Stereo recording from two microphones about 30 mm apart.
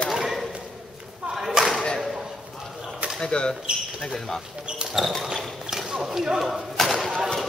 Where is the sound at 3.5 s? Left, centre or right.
Centre.